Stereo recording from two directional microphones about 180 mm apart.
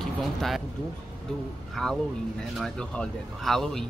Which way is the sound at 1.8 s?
5° left (ahead or behind).